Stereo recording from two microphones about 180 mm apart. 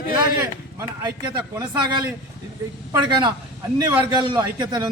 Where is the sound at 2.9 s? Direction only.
25° right (ahead or behind).